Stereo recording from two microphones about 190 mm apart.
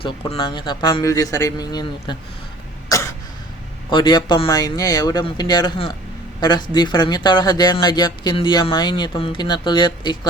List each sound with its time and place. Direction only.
0.0 s speech: 25° left (ahead or behind)
2.9 s cough: 15° left (ahead or behind)
3.8 s speech: 25° left (ahead or behind)